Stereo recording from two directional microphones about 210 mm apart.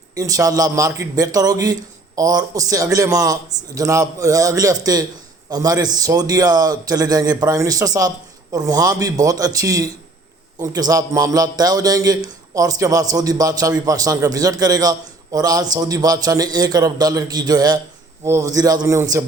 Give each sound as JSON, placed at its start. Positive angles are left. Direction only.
{"t": 0.2, "sound": "a man's voice", "side_deg": -15}